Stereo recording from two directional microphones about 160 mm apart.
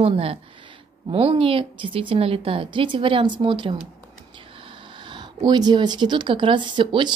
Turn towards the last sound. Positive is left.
turn(degrees=-30)  # may be behind; listen again after turning